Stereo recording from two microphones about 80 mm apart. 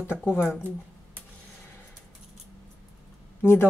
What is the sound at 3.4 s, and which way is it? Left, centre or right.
Speech, left.